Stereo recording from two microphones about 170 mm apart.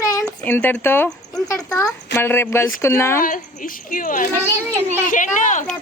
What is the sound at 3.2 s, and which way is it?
Speech, 55° left (ahead or behind).